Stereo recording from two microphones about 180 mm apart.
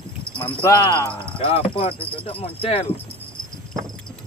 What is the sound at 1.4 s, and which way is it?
Speech, 35° left (ahead or behind).